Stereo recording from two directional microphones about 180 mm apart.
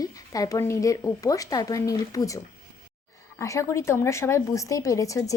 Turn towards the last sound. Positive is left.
turn(degrees=20)  # may be behind; listen again after turning